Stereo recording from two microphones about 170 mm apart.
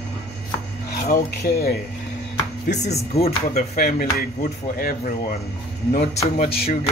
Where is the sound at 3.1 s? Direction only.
35° left (ahead or behind).